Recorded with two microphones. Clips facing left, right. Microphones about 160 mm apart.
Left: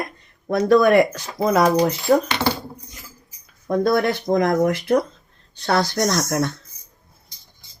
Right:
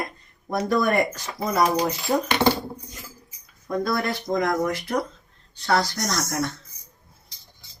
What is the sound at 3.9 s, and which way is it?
Speech, 65° left (ahead or behind).